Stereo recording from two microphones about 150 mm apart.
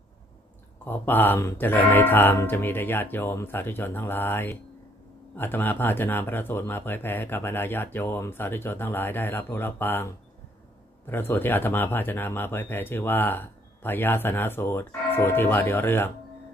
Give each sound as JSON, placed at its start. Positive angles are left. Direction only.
{"t": 0.8, "sound": "speech", "side_deg": 15}